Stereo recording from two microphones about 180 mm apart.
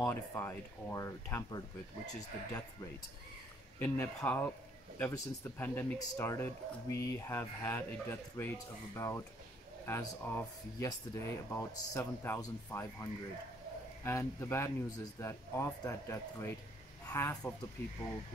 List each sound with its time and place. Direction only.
0.0 s speech: 15° left (ahead or behind)